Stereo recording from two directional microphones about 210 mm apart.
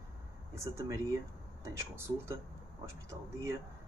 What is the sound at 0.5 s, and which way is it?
Speech, 15° right (ahead or behind).